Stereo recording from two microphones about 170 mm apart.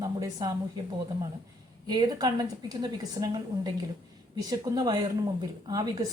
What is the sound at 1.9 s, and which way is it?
A woman's voice, 25° right (ahead or behind).